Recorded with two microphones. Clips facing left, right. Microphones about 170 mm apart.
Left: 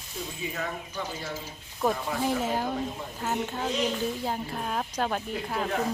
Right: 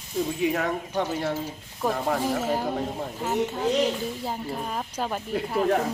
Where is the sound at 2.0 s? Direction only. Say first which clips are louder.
Right 3 dB; 50° right (ahead or behind).